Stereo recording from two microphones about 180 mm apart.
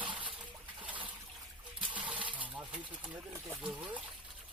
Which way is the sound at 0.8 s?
10° right (ahead or behind).